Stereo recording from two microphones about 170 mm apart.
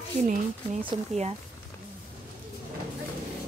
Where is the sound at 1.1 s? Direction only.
Centre (ahead or behind).